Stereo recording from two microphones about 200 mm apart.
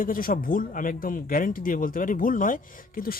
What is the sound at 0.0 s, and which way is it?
Speech, 45° left (ahead or behind).